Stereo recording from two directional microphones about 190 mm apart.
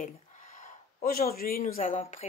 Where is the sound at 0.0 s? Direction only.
45° left (ahead or behind).